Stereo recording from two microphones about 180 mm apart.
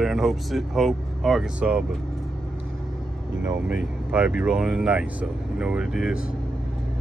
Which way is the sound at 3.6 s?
5° right (ahead or behind).